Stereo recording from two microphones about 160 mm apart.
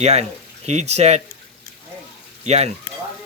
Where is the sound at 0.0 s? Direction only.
40° right (ahead or behind).